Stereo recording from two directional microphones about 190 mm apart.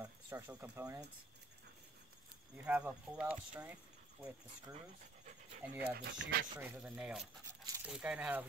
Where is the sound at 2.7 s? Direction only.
5° right (ahead or behind).